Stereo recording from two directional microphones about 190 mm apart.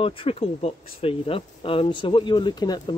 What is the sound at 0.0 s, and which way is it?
Speech, 30° left (ahead or behind).